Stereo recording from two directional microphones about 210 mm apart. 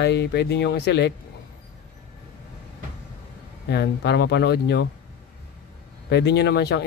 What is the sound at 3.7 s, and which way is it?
Speech, 55° left (ahead or behind).